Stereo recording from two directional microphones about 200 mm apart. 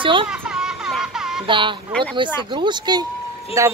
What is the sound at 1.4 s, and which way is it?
Speech, 25° right (ahead or behind).